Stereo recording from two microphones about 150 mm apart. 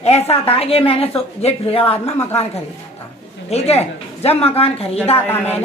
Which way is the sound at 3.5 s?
45° left (ahead or behind).